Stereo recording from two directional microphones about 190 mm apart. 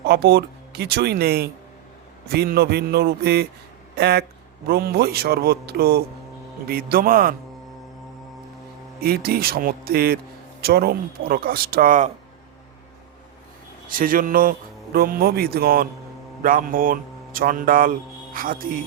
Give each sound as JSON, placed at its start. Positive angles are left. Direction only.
{"t": 0.0, "sound": "speech", "side_deg": -60}
{"t": 9.0, "sound": "speech", "side_deg": -55}
{"t": 13.9, "sound": "speech", "side_deg": -50}